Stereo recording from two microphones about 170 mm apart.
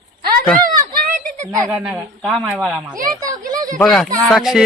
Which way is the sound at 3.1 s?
20° right (ahead or behind).